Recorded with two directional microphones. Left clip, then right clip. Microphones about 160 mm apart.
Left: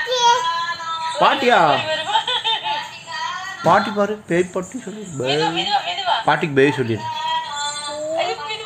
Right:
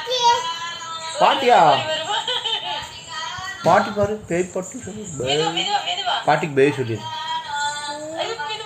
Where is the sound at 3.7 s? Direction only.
45° left (ahead or behind).